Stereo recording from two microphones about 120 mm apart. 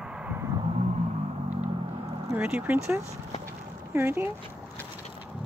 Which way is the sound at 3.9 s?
20° right (ahead or behind).